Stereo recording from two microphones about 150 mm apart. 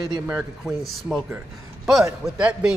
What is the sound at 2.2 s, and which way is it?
Speech, 5° right (ahead or behind).